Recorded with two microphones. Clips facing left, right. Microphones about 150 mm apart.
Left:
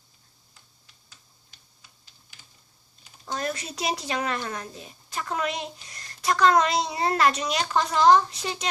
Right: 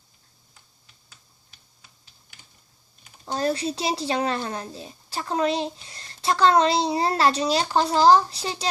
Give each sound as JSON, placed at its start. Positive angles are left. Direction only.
{"t": 3.3, "sound": "a child's voice", "side_deg": -30}